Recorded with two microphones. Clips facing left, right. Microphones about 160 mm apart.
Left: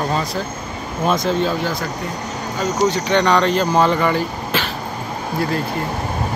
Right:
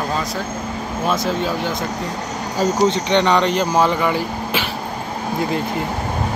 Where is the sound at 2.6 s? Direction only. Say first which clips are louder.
Right 2 dB; 25° right (ahead or behind); by 4.6 s 10° right (ahead or behind).